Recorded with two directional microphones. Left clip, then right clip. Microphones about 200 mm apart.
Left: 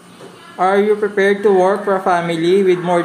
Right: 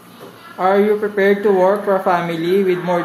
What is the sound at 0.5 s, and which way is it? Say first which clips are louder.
A woman's voice: left 1 dB; 10° left (ahead or behind).